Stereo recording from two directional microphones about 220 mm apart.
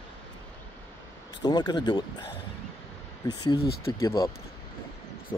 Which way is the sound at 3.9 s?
15° left (ahead or behind).